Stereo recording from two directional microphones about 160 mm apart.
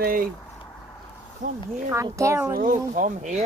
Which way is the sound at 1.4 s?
55° right (ahead or behind).